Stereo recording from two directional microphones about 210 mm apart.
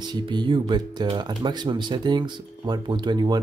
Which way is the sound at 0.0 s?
20° right (ahead or behind).